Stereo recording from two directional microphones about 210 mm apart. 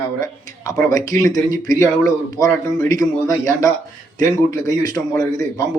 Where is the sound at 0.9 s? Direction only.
15° left (ahead or behind).